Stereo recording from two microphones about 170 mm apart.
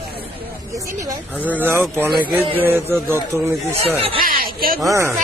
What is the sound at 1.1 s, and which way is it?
Speech, 10° right (ahead or behind).